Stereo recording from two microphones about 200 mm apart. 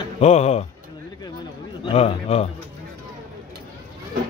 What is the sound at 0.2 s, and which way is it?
Speech, 30° left (ahead or behind).